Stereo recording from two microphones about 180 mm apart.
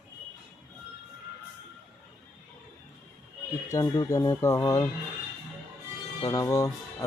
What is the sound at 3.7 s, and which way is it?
A man's voice, 15° left (ahead or behind).